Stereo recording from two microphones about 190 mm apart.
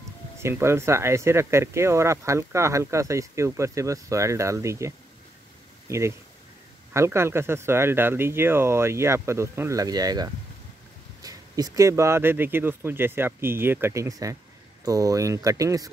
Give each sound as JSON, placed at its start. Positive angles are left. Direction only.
{"t": 0.4, "sound": "speech", "side_deg": -15}